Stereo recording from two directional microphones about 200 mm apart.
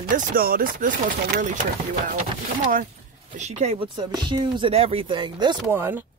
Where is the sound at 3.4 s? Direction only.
35° right (ahead or behind).